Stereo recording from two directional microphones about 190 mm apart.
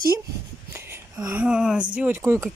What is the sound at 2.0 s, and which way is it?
Speech, 10° right (ahead or behind).